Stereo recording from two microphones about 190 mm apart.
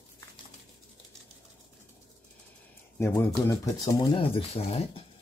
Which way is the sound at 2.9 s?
15° left (ahead or behind).